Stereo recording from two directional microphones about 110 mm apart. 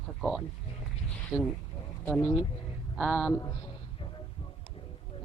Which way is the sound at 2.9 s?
Centre (ahead or behind).